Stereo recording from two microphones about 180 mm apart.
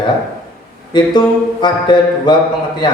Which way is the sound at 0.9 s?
25° left (ahead or behind).